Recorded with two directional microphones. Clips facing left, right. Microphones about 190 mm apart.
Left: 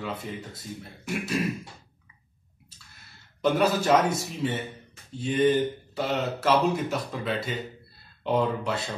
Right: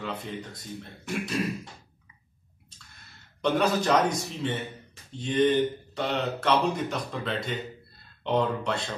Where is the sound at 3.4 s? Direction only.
5° left (ahead or behind).